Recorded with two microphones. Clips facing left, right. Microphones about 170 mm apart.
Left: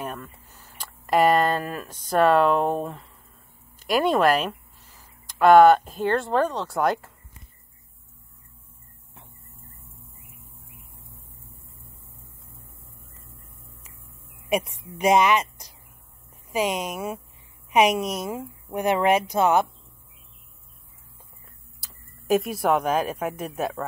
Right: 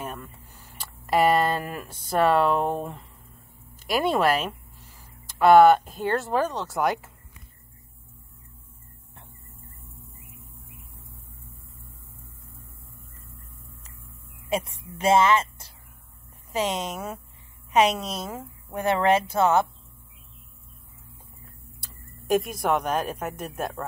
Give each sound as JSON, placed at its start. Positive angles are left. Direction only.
{"t": 0.1, "sound": "speech", "side_deg": -10}
{"t": 3.9, "sound": "a sound", "side_deg": -10}
{"t": 6.0, "sound": "speech", "side_deg": -5}
{"t": 14.5, "sound": "speech", "side_deg": 15}
{"t": 21.7, "sound": "speech", "side_deg": 5}